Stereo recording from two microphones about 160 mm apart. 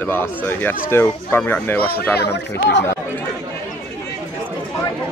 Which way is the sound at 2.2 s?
90° left.